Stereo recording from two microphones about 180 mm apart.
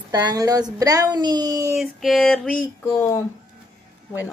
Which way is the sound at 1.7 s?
Centre (ahead or behind).